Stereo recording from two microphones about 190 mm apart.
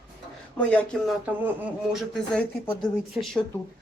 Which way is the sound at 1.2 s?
10° right (ahead or behind).